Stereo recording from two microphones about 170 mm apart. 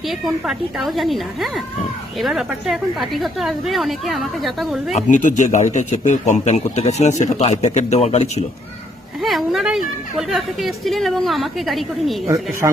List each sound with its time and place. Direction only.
0.1 s a woman's voice: centre (ahead or behind)
4.9 s a man's voice: 45° left (ahead or behind)
9.2 s a sound: centre (ahead or behind)
10.2 s a woman's voice: centre (ahead or behind)
12.6 s speech: 25° right (ahead or behind)